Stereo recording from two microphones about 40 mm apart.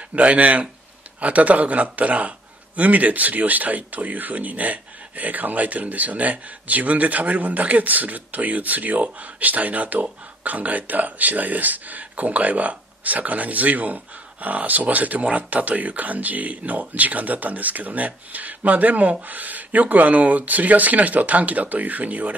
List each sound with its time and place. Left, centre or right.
0.1 s a man's voice: right